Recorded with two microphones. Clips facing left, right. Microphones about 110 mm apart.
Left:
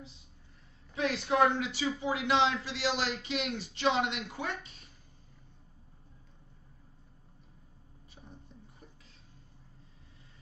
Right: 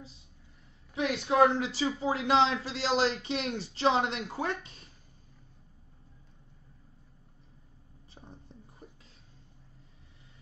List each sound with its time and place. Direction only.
0.9 s a man's voice: 25° right (ahead or behind)